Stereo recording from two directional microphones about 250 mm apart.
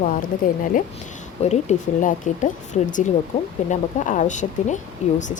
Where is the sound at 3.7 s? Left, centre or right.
Left.